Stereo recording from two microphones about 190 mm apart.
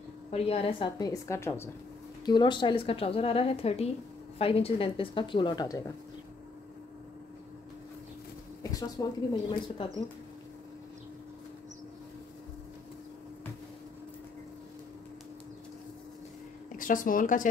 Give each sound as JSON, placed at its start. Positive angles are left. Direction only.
{"t": 0.3, "sound": "a woman's voice", "side_deg": 30}
{"t": 8.7, "sound": "a woman's voice", "side_deg": 20}
{"t": 16.7, "sound": "a woman's voice", "side_deg": 45}